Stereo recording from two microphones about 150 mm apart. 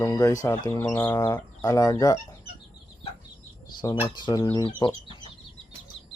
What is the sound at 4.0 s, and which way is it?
Speech, 30° left (ahead or behind).